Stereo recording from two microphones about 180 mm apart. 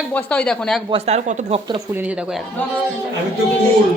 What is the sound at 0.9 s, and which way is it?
Speech, 35° right (ahead or behind).